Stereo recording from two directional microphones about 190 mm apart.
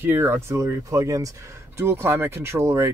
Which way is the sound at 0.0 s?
10° right (ahead or behind).